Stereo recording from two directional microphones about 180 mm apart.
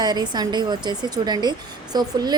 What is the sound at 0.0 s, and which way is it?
A woman's voice, 25° right (ahead or behind).